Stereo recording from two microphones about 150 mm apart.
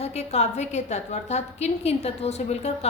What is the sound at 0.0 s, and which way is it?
A woman's voice, 45° left (ahead or behind).